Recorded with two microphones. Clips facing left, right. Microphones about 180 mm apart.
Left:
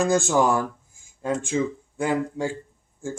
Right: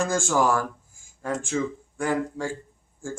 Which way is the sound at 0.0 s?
20° left (ahead or behind).